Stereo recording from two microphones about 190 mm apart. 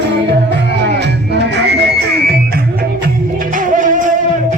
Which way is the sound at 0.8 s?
60° right (ahead or behind).